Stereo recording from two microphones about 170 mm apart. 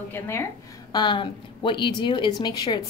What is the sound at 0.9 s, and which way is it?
A woman's voice, 30° left (ahead or behind).